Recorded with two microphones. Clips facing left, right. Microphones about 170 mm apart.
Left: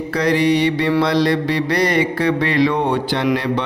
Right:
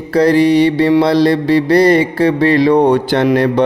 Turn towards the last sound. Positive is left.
turn(degrees=-45)  # may be behind; listen again after turning